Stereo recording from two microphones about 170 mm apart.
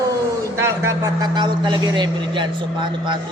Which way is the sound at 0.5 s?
15° right (ahead or behind).